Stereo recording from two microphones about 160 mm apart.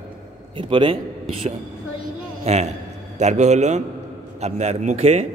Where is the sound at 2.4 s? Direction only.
40° right (ahead or behind).